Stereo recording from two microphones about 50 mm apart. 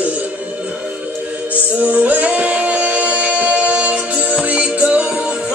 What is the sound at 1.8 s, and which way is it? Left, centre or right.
Music, right.